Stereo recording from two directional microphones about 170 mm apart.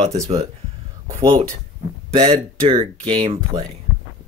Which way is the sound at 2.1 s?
35° right (ahead or behind).